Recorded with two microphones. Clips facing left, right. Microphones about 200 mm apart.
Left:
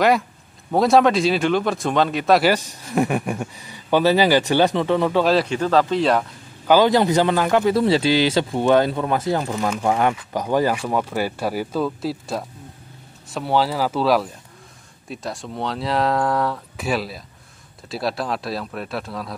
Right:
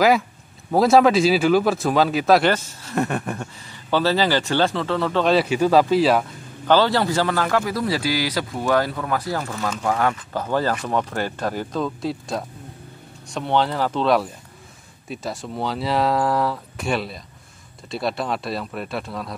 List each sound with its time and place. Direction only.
0.7 s speech: centre (ahead or behind)
2.5 s speech: 15° left (ahead or behind)
5.2 s speech: centre (ahead or behind)
6.7 s speech: 15° left (ahead or behind); by 19.3 s centre (ahead or behind)